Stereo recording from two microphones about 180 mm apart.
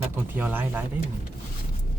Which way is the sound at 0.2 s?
10° right (ahead or behind).